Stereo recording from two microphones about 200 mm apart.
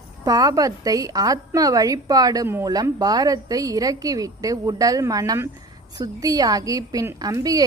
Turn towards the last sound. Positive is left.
turn(degrees=-15)  # may be behind; listen again after turning